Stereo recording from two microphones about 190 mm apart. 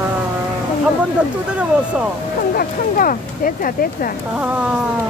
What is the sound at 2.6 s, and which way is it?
Speech, 45° left (ahead or behind).